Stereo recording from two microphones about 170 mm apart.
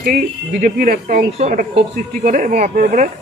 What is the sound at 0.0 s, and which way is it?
A woman's voice, 55° right (ahead or behind).